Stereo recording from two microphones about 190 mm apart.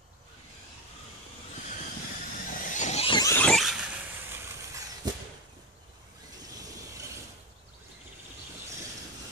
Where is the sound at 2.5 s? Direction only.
40° left (ahead or behind); by 3.3 s 25° left (ahead or behind).